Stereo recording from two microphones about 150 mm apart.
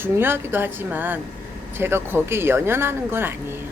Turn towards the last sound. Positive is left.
turn(degrees=-15)  # may be behind; listen again after turning